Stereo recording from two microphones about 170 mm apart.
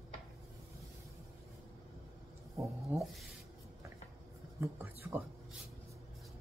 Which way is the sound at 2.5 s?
15° right (ahead or behind).